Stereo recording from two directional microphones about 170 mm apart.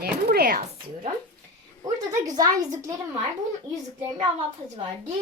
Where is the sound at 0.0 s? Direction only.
65° right (ahead or behind).